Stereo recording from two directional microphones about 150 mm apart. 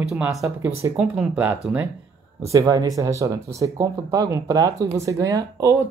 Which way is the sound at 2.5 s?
25° right (ahead or behind).